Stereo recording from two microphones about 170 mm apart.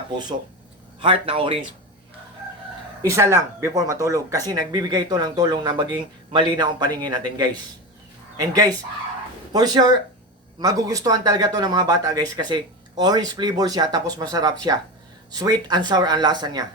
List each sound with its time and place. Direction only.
1.0 s speech: 30° right (ahead or behind)
3.0 s speech: 15° right (ahead or behind)